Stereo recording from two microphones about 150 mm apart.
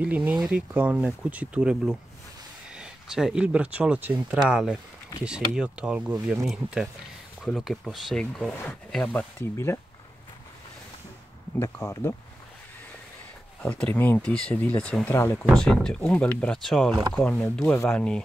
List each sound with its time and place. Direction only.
0.0 s speech: 10° right (ahead or behind); by 9.8 s 15° left (ahead or behind)
11.6 s speech: 20° left (ahead or behind)
13.6 s speech: 10° left (ahead or behind)